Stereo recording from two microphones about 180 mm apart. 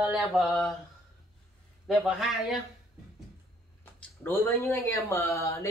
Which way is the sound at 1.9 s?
Centre (ahead or behind).